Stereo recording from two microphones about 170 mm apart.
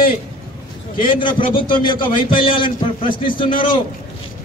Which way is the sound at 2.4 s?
30° left (ahead or behind).